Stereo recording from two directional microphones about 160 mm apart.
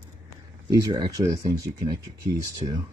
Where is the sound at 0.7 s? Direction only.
25° right (ahead or behind).